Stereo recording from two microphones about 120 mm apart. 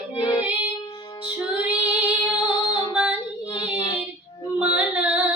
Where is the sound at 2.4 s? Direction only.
40° left (ahead or behind).